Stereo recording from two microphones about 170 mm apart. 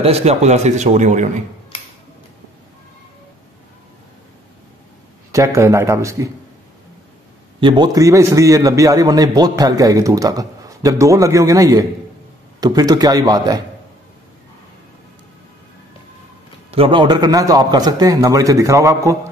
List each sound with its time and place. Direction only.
0.0 s a man's voice: 40° right (ahead or behind)
5.3 s speech: 15° right (ahead or behind)
7.6 s a man's voice: 25° right (ahead or behind)
16.7 s a man's voice: 30° right (ahead or behind)